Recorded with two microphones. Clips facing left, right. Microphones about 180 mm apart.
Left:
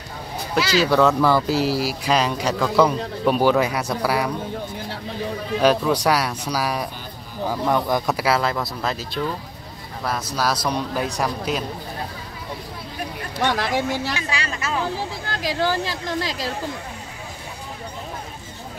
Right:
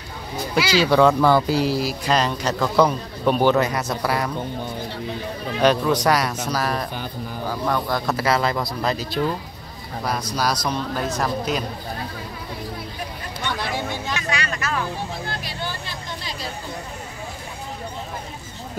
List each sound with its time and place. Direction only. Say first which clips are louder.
0.6 s speech: right 1 dB; centre (ahead or behind)
5.6 s speech: even; 5° left (ahead or behind)
8.1 s speech: right 3 dB; 5° left (ahead or behind)
13.4 s speech: left 5 dB; 85° left
14.1 s speech: right 1 dB; 30° left (ahead or behind)
15.2 s speech: left 7 dB; 90° left